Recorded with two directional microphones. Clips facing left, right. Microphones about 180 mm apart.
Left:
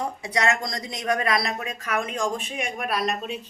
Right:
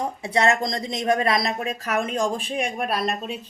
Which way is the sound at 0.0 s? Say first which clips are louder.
Right 3 dB; 25° right (ahead or behind).